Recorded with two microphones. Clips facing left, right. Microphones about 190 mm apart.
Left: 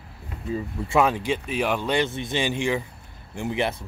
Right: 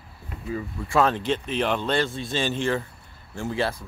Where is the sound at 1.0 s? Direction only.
10° left (ahead or behind).